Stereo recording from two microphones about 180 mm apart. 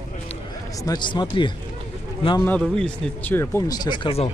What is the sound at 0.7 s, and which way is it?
Speech, 20° left (ahead or behind).